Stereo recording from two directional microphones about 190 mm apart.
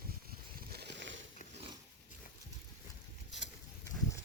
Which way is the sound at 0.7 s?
65° right (ahead or behind).